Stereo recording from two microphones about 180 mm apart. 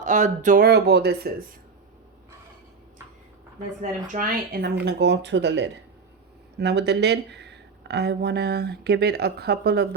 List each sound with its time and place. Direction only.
0.0 s speech: 45° right (ahead or behind); by 1.5 s 60° right (ahead or behind)
4.0 s speech: 50° right (ahead or behind)
4.8 s speech: 65° right (ahead or behind)